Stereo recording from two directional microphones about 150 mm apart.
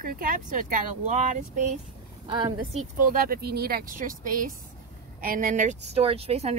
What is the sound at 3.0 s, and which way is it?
Speech, 70° right (ahead or behind).